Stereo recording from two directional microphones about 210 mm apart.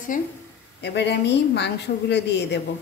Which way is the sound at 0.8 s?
55° left (ahead or behind).